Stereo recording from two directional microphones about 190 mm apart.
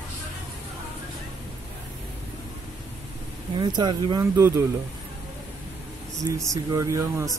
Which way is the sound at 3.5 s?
20° right (ahead or behind).